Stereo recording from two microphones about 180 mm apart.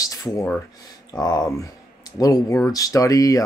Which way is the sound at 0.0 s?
20° left (ahead or behind).